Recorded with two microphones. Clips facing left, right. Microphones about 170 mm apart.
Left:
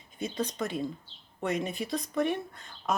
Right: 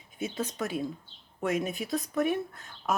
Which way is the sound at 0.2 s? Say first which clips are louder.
Even; 5° right (ahead or behind).